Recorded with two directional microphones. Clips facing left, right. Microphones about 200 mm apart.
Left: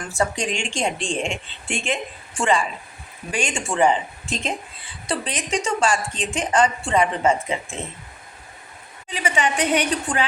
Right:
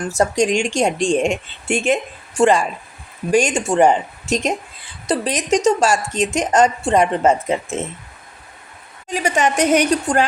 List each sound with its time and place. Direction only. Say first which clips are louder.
0.1 s a woman's voice: right 7 dB; 40° right (ahead or behind)
9.0 s a woman's voice: right 5 dB; 45° right (ahead or behind)